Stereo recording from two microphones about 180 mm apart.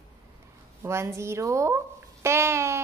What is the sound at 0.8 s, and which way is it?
Speech, 15° right (ahead or behind).